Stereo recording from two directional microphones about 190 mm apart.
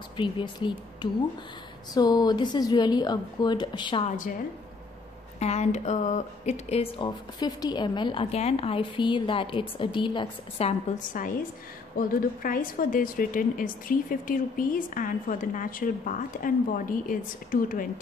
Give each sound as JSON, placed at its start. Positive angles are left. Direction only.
{"t": 0.2, "sound": "speech", "side_deg": 25}
{"t": 5.4, "sound": "speech", "side_deg": 35}
{"t": 10.9, "sound": "a woman's voice", "side_deg": 35}
{"t": 12.1, "sound": "a woman's voice", "side_deg": 45}